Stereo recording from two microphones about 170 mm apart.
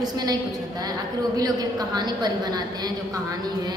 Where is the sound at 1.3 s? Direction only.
25° right (ahead or behind).